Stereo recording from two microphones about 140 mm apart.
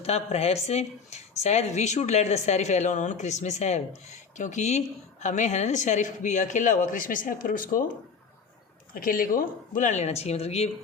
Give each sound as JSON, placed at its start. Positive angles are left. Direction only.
{"t": 0.0, "sound": "speech", "side_deg": 50}
{"t": 8.9, "sound": "speech", "side_deg": 90}